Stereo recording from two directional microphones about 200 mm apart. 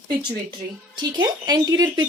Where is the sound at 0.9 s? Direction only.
20° right (ahead or behind).